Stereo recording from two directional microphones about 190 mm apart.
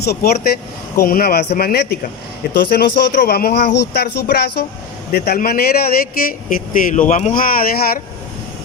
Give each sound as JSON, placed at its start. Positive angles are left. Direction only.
{"t": 0.0, "sound": "speech", "side_deg": 55}